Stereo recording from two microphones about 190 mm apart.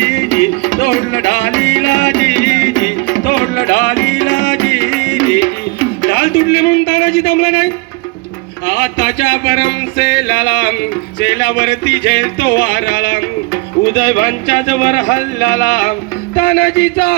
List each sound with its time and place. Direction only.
0.0 s music: 65° left (ahead or behind)
14.2 s music: 55° left (ahead or behind)
16.6 s speech: 45° left (ahead or behind)